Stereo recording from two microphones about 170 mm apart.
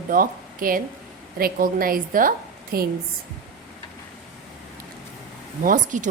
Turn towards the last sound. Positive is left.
turn(degrees=-50)  # may be behind; listen again after turning